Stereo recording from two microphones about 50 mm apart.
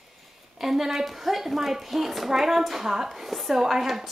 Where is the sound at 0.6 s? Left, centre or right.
Centre.